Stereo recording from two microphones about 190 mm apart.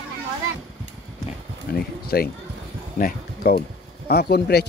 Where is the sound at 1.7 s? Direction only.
50° left (ahead or behind).